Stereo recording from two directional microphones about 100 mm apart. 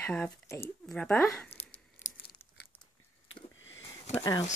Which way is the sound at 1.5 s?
80° left.